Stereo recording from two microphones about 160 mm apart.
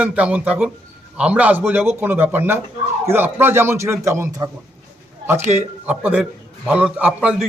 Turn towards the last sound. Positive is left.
turn(degrees=-5)  # may be behind; listen again after turning